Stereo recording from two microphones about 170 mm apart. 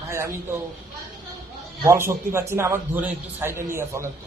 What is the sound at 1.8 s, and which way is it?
A man's voice, 15° right (ahead or behind).